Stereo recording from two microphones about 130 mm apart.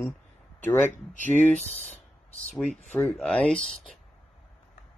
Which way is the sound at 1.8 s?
10° left (ahead or behind).